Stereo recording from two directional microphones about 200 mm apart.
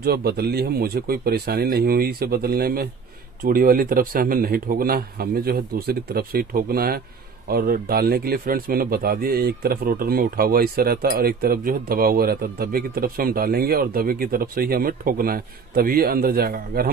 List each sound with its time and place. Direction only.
0.0 s speech: 50° right (ahead or behind)